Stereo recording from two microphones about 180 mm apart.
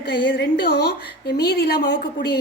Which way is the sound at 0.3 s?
65° left (ahead or behind).